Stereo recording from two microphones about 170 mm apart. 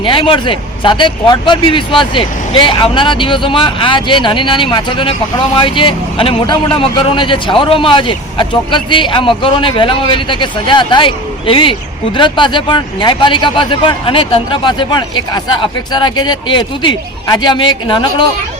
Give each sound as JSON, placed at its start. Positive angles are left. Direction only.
{"t": 0.0, "sound": "a man's voice", "side_deg": 30}